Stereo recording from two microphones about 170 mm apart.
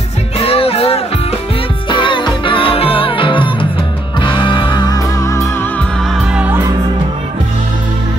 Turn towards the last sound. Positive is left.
turn(degrees=-10)  # may be behind; listen again after turning